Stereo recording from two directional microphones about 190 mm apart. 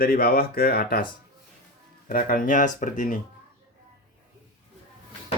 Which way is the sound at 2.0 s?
45° left (ahead or behind).